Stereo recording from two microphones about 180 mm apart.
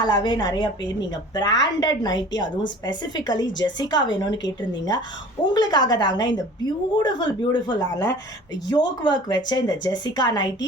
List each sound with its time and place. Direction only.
0.0 s a woman's voice: 25° left (ahead or behind)
5.5 s a woman's voice: 25° left (ahead or behind)